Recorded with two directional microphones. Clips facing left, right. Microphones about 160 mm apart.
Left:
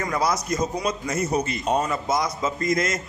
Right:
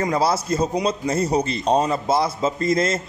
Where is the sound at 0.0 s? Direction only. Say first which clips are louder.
Right 4 dB; 30° right (ahead or behind).